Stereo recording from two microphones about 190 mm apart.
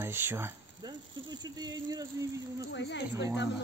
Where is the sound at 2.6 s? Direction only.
70° left (ahead or behind).